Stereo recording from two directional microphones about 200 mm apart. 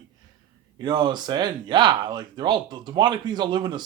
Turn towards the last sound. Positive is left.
turn(degrees=-20)  # may be behind; listen again after turning